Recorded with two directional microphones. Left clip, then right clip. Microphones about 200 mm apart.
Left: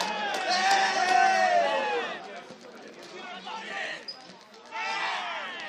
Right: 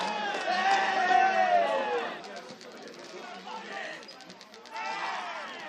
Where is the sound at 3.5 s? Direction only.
30° left (ahead or behind).